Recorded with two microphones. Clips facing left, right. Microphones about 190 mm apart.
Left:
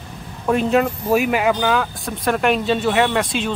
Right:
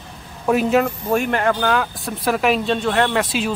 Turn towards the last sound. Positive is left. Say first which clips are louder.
# even
turn(degrees=-5)  # may be behind; listen again after turning